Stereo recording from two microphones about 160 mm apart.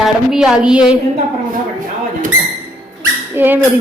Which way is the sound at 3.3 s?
10° right (ahead or behind).